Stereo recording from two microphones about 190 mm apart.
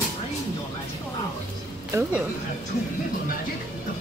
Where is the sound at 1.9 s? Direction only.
15° right (ahead or behind).